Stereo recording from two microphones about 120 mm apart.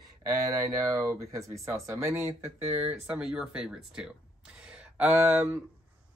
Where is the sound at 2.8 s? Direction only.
10° right (ahead or behind).